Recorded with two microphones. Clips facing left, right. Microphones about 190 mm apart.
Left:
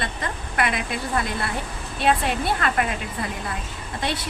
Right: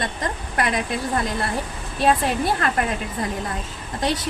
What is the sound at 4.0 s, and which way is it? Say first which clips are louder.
Speech: right 4 dB; 40° right (ahead or behind).